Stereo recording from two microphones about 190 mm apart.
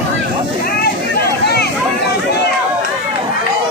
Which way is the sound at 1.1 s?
55° left (ahead or behind).